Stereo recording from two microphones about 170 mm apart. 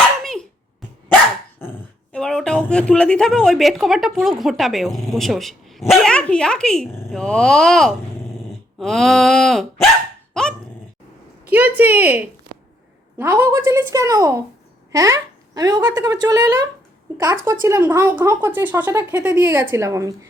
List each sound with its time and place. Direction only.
0.2 s a sound: centre (ahead or behind)
1.6 s dog: 10° left (ahead or behind)
2.1 s a woman's voice: 5° left (ahead or behind)
11.5 s speech: 10° right (ahead or behind)